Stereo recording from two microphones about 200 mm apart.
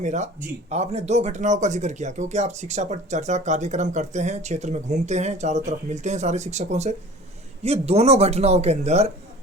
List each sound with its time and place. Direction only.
0.0 s speech: 35° right (ahead or behind)